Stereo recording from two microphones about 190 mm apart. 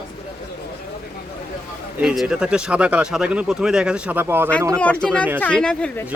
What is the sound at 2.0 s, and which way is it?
Speech, centre (ahead or behind).